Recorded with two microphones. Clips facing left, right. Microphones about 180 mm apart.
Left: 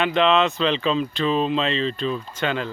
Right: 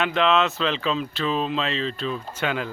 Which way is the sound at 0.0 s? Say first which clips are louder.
Left 2 dB; centre (ahead or behind).